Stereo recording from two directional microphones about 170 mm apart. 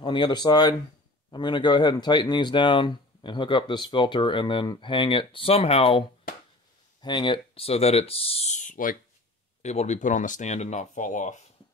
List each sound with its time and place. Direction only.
0.0 s speech: 25° left (ahead or behind); by 11.3 s 50° left (ahead or behind)